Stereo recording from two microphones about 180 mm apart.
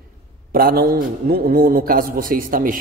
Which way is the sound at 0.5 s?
55° right (ahead or behind).